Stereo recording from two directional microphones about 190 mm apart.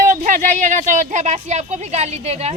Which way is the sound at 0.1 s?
40° right (ahead or behind).